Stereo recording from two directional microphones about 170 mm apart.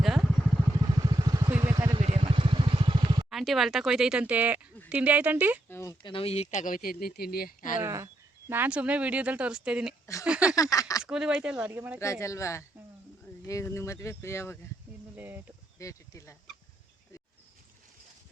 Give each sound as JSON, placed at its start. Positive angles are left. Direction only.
{"t": 0.0, "sound": "vehicle", "side_deg": 0}
{"t": 1.0, "sound": "vehicle", "side_deg": -20}
{"t": 1.5, "sound": "vehicle", "side_deg": -10}
{"t": 1.7, "sound": "vehicle", "side_deg": -20}
{"t": 2.0, "sound": "vehicle", "side_deg": -35}
{"t": 3.2, "sound": "speech", "side_deg": 0}
{"t": 5.6, "sound": "a sound", "side_deg": 15}
{"t": 6.0, "sound": "speech", "side_deg": 30}
{"t": 7.8, "sound": "speech", "side_deg": -15}
{"t": 10.5, "sound": "speech", "side_deg": 20}
{"t": 11.0, "sound": "speech", "side_deg": -5}
{"t": 11.9, "sound": "speech", "side_deg": 15}
{"t": 15.1, "sound": "a sound", "side_deg": -10}
{"t": 15.8, "sound": "speech", "side_deg": 15}